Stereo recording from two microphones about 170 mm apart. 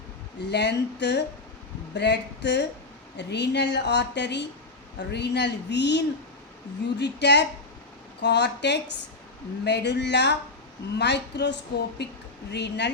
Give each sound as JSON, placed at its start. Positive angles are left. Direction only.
{"t": 0.3, "sound": "a woman's voice", "side_deg": 80}